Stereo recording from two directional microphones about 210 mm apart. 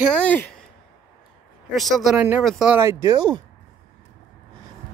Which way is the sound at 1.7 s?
Centre (ahead or behind).